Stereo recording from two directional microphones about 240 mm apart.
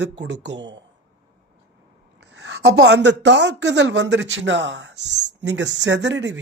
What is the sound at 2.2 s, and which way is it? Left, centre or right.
Speech, right.